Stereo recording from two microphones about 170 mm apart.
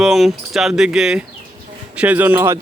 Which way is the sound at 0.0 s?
Centre (ahead or behind).